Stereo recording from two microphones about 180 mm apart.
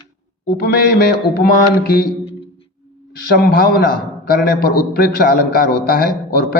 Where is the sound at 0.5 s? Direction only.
65° left (ahead or behind).